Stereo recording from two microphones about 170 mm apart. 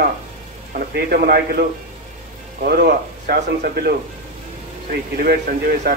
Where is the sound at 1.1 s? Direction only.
60° right (ahead or behind).